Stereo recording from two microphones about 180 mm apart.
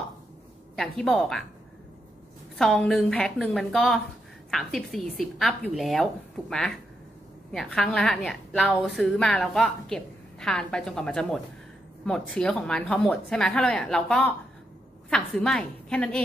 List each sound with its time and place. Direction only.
0.7 s a woman's voice: 5° left (ahead or behind)
2.5 s a woman's voice: centre (ahead or behind)